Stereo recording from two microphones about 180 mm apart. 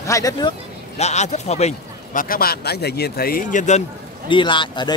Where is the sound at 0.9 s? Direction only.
40° left (ahead or behind).